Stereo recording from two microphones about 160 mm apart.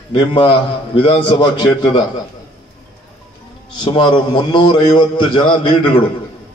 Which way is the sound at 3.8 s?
30° left (ahead or behind).